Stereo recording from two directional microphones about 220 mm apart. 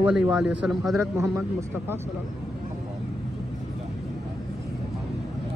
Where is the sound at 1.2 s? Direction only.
15° right (ahead or behind).